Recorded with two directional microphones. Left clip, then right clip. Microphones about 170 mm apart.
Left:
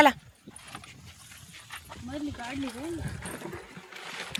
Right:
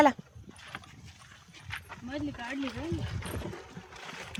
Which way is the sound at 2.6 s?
45° left (ahead or behind).